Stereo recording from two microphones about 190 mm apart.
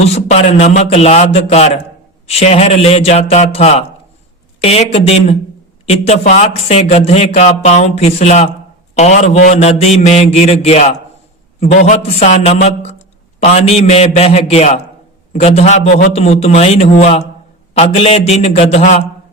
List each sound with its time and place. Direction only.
0.0 s a man's voice: 35° left (ahead or behind)